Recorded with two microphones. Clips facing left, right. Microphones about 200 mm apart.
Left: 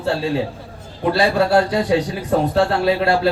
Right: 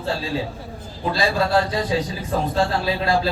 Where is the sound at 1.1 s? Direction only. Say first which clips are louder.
Left 5 dB; 70° left (ahead or behind).